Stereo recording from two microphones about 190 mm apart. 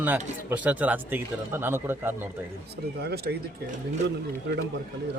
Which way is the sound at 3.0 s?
60° right (ahead or behind).